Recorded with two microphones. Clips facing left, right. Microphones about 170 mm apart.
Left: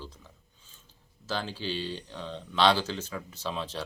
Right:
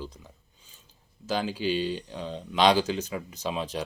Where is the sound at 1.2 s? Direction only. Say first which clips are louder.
Right 6 dB; 15° right (ahead or behind).